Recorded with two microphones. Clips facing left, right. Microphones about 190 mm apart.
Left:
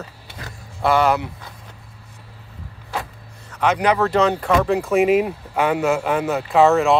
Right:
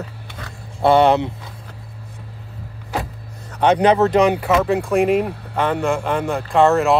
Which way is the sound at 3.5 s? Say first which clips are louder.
Right 4 dB; 30° right (ahead or behind).